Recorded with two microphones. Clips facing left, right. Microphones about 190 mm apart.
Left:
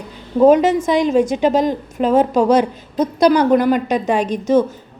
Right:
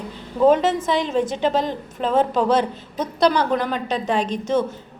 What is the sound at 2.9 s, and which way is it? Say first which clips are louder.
Speech: left 6 dB; 40° left (ahead or behind).